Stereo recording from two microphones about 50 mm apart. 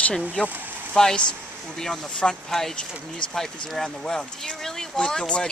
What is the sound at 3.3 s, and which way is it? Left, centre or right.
Speech, centre.